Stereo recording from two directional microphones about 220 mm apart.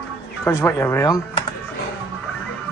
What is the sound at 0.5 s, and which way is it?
Speech, 10° left (ahead or behind).